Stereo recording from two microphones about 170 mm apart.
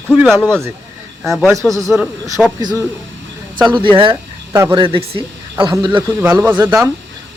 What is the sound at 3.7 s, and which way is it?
Speech, 30° right (ahead or behind).